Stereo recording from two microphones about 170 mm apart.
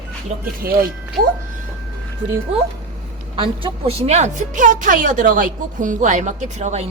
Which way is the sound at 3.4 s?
35° right (ahead or behind).